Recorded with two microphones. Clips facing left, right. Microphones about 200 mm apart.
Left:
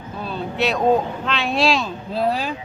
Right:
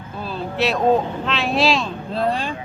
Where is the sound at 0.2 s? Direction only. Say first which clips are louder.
Right 1 dB; centre (ahead or behind).